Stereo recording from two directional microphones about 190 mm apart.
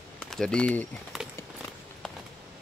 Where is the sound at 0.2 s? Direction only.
5° left (ahead or behind).